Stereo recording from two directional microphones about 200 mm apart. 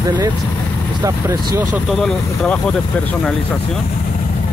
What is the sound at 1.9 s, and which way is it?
Speech, centre (ahead or behind).